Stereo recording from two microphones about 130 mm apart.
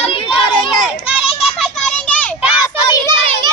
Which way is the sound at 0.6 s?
45° left (ahead or behind).